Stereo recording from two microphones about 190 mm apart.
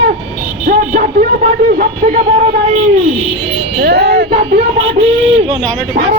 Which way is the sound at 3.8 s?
55° right (ahead or behind).